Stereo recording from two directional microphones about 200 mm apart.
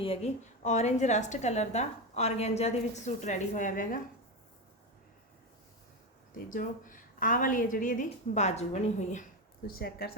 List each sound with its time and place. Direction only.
0.0 s a woman's voice: 30° left (ahead or behind)
6.3 s a woman's voice: 40° left (ahead or behind)
9.6 s speech: 50° left (ahead or behind)